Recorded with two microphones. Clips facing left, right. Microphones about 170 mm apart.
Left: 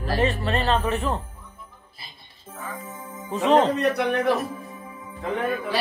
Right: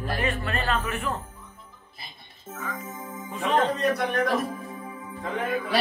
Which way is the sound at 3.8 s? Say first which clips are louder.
Left 3 dB; 65° left (ahead or behind).